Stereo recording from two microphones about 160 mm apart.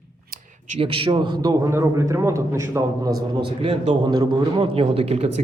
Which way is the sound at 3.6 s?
40° right (ahead or behind).